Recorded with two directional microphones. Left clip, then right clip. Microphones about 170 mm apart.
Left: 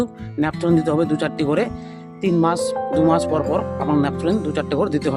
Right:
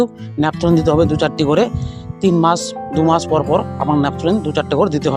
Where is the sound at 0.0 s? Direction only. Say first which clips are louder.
Right 6 dB; 25° right (ahead or behind).